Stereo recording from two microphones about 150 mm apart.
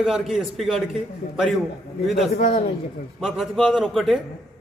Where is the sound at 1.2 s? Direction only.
55° left (ahead or behind).